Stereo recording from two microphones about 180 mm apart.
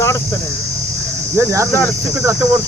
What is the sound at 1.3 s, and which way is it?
Speech, 15° right (ahead or behind).